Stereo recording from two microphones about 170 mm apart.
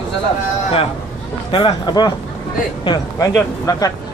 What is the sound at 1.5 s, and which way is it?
Speech, 25° left (ahead or behind).